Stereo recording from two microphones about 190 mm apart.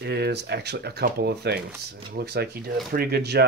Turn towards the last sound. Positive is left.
turn(degrees=-60)  # may be behind; listen again after turning